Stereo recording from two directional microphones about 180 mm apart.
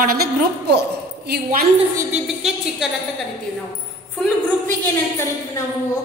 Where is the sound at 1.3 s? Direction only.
55° right (ahead or behind).